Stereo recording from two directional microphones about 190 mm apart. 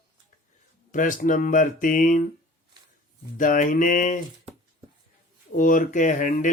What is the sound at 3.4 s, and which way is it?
Speech, 45° left (ahead or behind).